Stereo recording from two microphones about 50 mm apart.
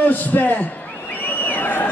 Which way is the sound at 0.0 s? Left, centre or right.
Left.